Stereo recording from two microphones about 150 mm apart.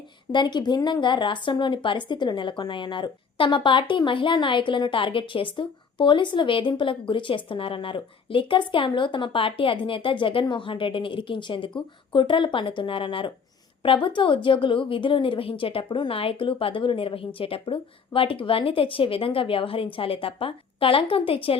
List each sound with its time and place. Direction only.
0.3 s a woman's voice: 30° left (ahead or behind)